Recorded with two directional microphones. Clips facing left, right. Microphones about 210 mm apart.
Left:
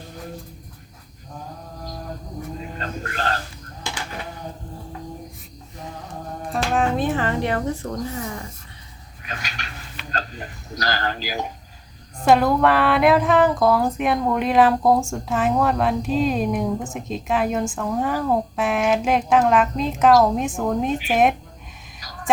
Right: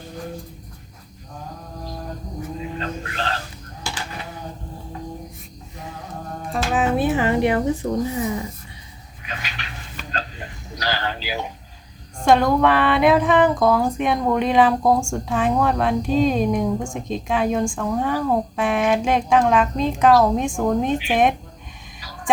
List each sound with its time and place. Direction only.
2.7 s speech: 45° left (ahead or behind)
6.5 s speech: 5° right (ahead or behind)
9.2 s a sound: 45° left (ahead or behind)
12.2 s speech: 5° left (ahead or behind)